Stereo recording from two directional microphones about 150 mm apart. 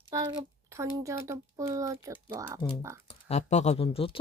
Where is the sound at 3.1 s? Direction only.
45° left (ahead or behind).